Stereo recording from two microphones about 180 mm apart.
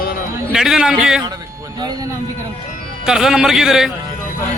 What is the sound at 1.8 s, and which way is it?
Speech, 20° right (ahead or behind).